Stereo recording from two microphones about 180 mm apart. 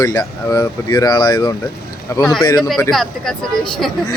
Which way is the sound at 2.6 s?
5° left (ahead or behind).